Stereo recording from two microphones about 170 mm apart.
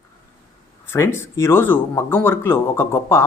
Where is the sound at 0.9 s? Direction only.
15° left (ahead or behind).